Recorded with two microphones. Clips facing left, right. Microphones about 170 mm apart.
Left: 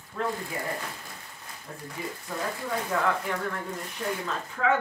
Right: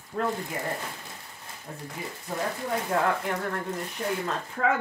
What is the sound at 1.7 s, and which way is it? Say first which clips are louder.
Speech: right 1 dB; 20° right (ahead or behind).